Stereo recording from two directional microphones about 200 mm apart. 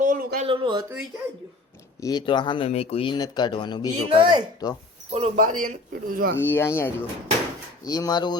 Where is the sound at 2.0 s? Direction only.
20° left (ahead or behind).